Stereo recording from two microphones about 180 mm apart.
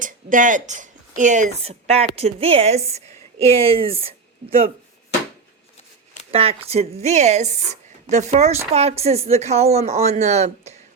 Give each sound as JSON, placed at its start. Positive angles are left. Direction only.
{"t": 0.0, "sound": "speech", "side_deg": -45}
{"t": 6.3, "sound": "speech", "side_deg": -35}